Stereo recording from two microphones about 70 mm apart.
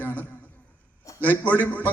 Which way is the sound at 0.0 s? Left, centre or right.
Left.